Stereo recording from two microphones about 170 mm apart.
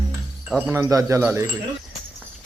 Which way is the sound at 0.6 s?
15° right (ahead or behind).